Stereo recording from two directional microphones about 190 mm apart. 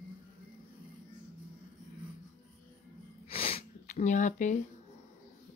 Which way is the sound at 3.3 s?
30° left (ahead or behind).